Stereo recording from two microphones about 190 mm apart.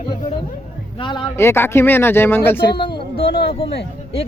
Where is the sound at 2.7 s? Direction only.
25° left (ahead or behind).